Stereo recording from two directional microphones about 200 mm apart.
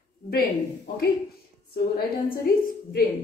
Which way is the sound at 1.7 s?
50° left (ahead or behind).